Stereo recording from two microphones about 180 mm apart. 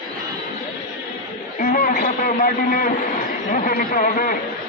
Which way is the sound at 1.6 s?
45° left (ahead or behind).